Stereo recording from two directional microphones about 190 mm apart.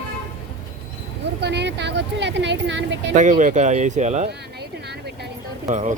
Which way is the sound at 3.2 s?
40° right (ahead or behind).